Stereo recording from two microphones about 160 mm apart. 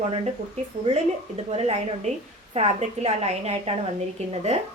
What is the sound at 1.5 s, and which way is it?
Speech, 40° right (ahead or behind).